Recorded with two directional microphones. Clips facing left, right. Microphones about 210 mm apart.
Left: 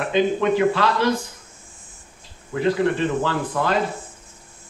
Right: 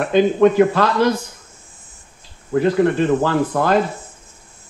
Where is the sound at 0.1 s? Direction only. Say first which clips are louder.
Right 6 dB; 45° right (ahead or behind).